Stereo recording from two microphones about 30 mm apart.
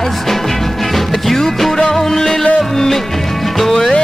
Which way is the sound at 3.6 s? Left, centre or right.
Centre.